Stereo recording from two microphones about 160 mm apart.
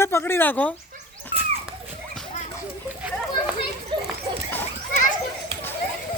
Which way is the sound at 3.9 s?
30° right (ahead or behind).